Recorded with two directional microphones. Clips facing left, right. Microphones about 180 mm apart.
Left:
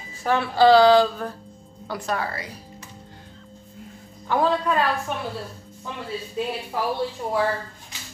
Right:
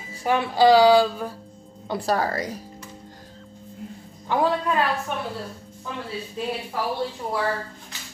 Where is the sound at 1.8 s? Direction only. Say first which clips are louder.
Right 4 dB; 35° right (ahead or behind).